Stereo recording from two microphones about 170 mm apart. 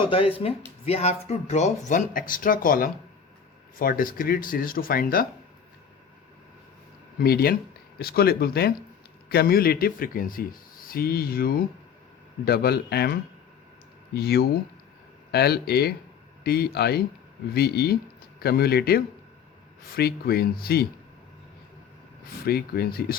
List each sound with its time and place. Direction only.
0.3 s speech: 35° left (ahead or behind); by 5.2 s 60° left (ahead or behind)
7.2 s speech: 65° left (ahead or behind)
22.4 s speech: 65° left (ahead or behind)